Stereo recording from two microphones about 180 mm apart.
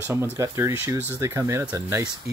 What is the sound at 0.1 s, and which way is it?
Speech, 15° right (ahead or behind).